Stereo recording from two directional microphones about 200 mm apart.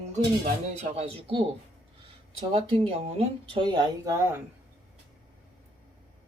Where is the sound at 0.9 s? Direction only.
30° right (ahead or behind).